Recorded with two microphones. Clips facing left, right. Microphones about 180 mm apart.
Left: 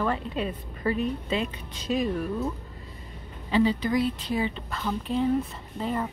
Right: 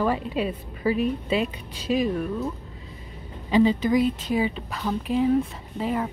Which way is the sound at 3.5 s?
15° right (ahead or behind).